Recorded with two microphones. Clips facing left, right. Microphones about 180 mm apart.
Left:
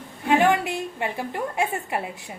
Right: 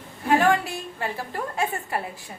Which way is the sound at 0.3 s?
20° left (ahead or behind).